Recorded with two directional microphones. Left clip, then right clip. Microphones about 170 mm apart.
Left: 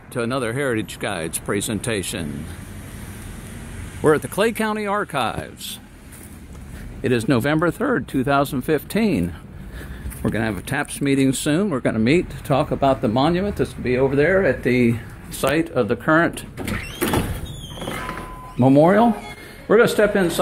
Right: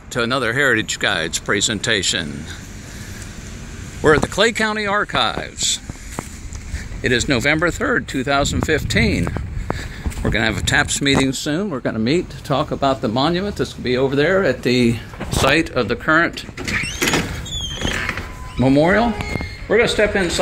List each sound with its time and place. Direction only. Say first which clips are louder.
0.1 s speech: right 5 dB; 5° left (ahead or behind)
4.0 s speech: right 3 dB; 10° left (ahead or behind)
7.0 s speech: right 2 dB; 20° left (ahead or behind)
10.2 s speech: right 5 dB; 5° left (ahead or behind)
11.1 s speech: even; 20° left (ahead or behind)
13.8 s speech: right 1 dB; centre (ahead or behind)
15.3 s speech: right 4 dB; centre (ahead or behind)
16.1 s speech: right 3 dB; 20° left (ahead or behind)
18.6 s speech: left 1 dB; 15° left (ahead or behind)
19.7 s speech: even; 35° left (ahead or behind)